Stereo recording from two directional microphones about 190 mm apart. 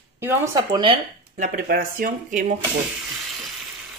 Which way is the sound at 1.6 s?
50° right (ahead or behind).